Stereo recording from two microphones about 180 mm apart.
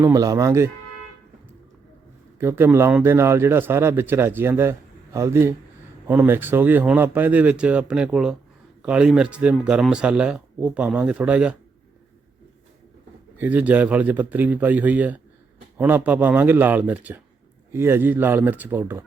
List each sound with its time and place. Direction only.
0.0 s a man's voice: 20° right (ahead or behind)
2.4 s a man's voice: 15° right (ahead or behind)
13.4 s a man's voice: 10° right (ahead or behind)